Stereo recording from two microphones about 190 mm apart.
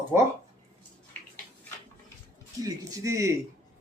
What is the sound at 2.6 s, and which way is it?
Speech, 20° right (ahead or behind).